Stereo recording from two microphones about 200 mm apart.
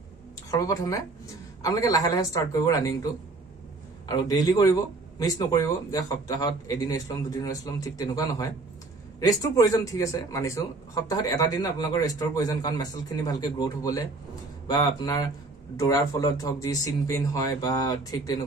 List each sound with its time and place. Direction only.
0.5 s speech: 15° left (ahead or behind)
4.1 s speech: 20° left (ahead or behind)